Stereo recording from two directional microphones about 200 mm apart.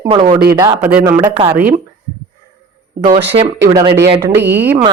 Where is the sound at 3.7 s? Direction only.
20° right (ahead or behind).